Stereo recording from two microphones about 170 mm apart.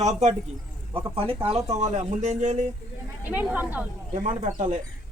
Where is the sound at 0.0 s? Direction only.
45° right (ahead or behind).